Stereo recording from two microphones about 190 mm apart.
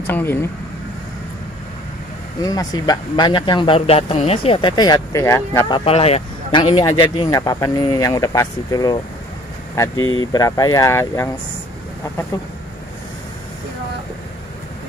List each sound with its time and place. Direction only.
0.0 s speech: 10° left (ahead or behind)
2.4 s speech: 20° left (ahead or behind)
5.7 s speech: 30° left (ahead or behind)
9.9 s speech: 90° left
10.2 s speech: 20° left (ahead or behind)